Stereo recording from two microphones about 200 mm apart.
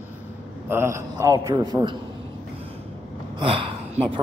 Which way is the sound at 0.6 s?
15° right (ahead or behind).